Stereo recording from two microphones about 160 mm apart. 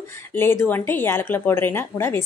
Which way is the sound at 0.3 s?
15° left (ahead or behind).